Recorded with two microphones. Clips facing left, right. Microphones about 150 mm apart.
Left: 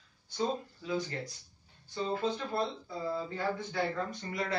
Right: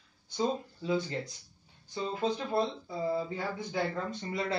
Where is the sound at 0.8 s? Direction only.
25° right (ahead or behind).